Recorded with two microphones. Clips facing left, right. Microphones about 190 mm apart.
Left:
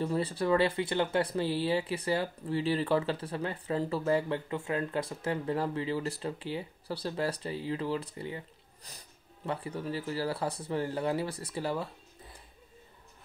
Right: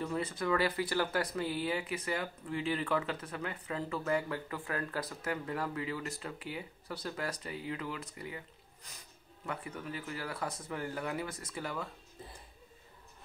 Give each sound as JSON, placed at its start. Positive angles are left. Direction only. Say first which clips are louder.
{"t": 0.0, "sound": "speech", "louder": "left 5 dB", "side_deg": 30}